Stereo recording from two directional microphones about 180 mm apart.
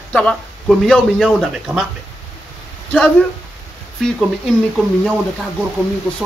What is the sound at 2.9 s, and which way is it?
Speech, 5° left (ahead or behind).